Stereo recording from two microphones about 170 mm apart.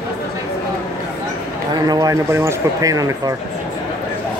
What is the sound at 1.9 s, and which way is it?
Speech, 20° right (ahead or behind).